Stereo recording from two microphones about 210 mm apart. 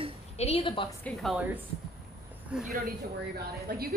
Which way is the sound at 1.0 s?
Centre (ahead or behind).